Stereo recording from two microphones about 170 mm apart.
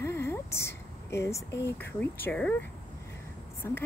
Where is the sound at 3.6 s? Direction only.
15° left (ahead or behind).